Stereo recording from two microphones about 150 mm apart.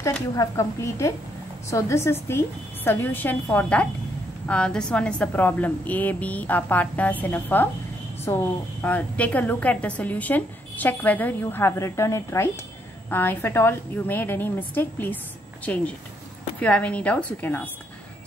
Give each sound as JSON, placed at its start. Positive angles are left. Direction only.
{"t": 0.4, "sound": "a woman's voice", "side_deg": 20}
{"t": 8.8, "sound": "a woman's voice", "side_deg": 10}